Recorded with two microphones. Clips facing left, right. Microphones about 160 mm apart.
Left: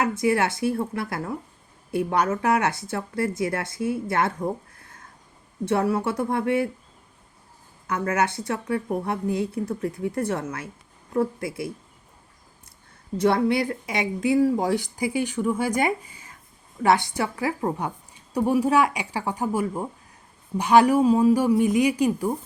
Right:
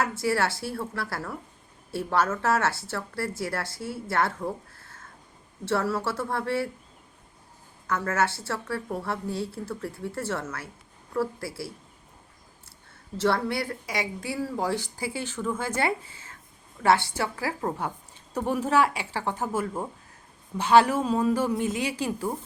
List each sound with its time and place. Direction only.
0.0 s a woman's voice: 20° left (ahead or behind)
7.9 s a woman's voice: 15° left (ahead or behind)
13.1 s a woman's voice: 20° left (ahead or behind)